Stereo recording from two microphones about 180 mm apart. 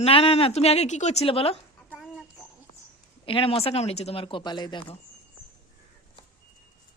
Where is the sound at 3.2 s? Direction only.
30° left (ahead or behind).